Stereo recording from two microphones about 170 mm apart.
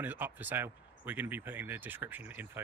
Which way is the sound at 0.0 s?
10° right (ahead or behind).